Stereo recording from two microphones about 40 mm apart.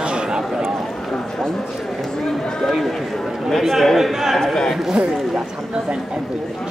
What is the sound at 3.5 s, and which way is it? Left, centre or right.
Speech, centre.